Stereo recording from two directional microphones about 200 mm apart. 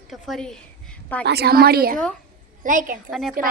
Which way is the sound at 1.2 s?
55° right (ahead or behind).